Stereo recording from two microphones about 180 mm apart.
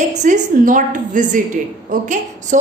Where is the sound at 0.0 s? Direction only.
40° right (ahead or behind).